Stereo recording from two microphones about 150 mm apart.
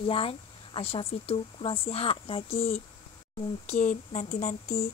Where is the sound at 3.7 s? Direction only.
55° left (ahead or behind).